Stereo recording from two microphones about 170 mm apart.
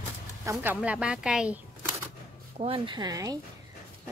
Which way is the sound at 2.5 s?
30° right (ahead or behind).